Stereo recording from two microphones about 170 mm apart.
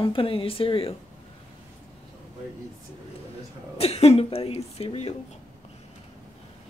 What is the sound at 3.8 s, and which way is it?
Speech, 35° left (ahead or behind).